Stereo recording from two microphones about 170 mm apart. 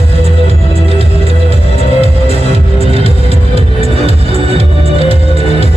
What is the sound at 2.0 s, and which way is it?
Music, 35° right (ahead or behind).